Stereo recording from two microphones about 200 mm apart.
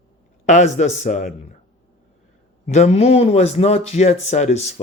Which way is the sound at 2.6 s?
35° left (ahead or behind).